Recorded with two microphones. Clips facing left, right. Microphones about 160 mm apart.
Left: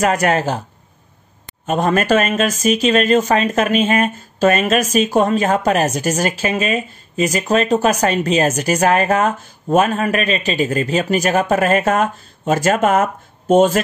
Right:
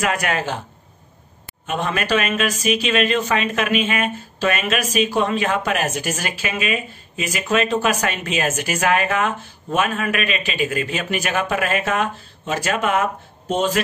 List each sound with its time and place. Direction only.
0.0 s speech: 40° left (ahead or behind)
1.7 s speech: 45° left (ahead or behind)